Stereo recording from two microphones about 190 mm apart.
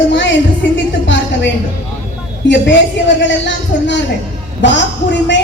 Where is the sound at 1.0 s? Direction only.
75° left (ahead or behind).